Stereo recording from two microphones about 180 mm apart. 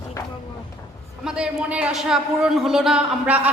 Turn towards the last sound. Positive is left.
turn(degrees=-10)  # may be behind; listen again after turning